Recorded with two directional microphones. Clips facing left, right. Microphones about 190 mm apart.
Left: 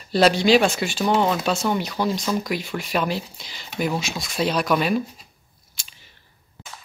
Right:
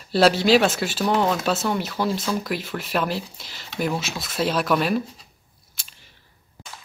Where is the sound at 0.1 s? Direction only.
5° right (ahead or behind).